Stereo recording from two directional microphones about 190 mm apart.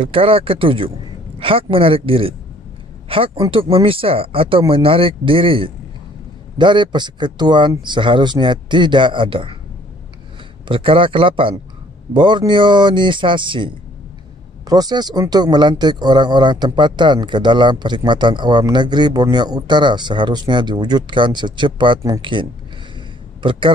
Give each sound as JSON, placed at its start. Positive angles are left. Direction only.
{"t": 0.0, "sound": "speech", "side_deg": -30}
{"t": 10.7, "sound": "speech", "side_deg": -25}
{"t": 14.7, "sound": "speech", "side_deg": -20}